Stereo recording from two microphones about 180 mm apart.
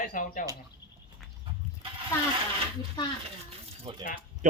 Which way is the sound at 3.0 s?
25° left (ahead or behind).